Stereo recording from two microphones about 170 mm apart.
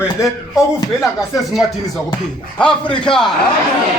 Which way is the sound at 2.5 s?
5° left (ahead or behind).